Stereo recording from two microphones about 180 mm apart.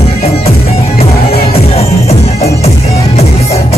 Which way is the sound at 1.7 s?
35° left (ahead or behind).